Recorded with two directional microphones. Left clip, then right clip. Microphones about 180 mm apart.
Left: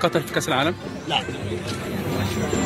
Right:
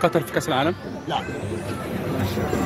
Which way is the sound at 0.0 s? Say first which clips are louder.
Right 1 dB; 25° right (ahead or behind).